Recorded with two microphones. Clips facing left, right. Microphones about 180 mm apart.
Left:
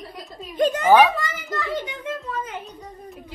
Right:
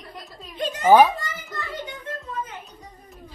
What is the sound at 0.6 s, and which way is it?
Speech, 55° left (ahead or behind).